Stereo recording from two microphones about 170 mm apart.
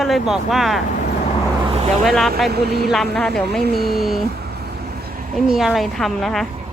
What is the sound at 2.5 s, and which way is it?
Speech, 70° right (ahead or behind).